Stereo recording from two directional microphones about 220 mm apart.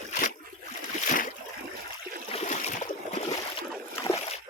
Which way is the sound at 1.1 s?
35° left (ahead or behind).